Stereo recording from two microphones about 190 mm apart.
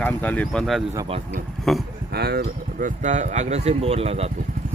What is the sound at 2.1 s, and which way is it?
Speech, 60° right (ahead or behind).